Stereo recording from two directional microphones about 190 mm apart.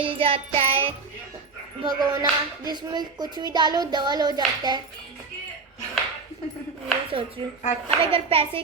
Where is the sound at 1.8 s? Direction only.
20° right (ahead or behind).